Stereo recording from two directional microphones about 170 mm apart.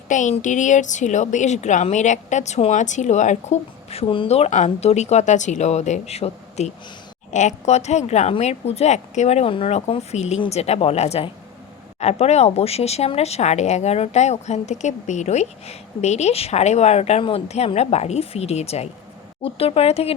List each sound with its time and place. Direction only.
0.1 s a woman's voice: 45° left (ahead or behind)